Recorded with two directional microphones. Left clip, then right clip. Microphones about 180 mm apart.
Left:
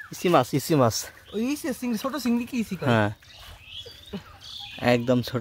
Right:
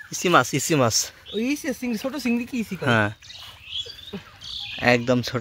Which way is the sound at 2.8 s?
10° left (ahead or behind).